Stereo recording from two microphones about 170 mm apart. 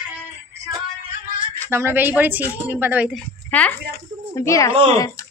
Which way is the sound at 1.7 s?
15° right (ahead or behind).